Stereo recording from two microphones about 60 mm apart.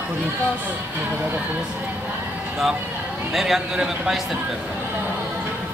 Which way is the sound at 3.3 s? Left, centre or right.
Centre.